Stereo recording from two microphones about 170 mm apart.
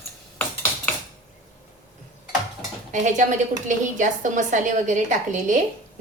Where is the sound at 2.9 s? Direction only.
45° right (ahead or behind).